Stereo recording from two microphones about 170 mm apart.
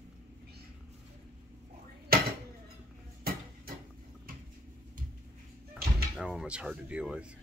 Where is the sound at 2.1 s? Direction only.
60° right (ahead or behind).